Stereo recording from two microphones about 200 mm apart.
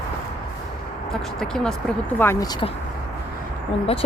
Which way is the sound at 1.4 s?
5° left (ahead or behind).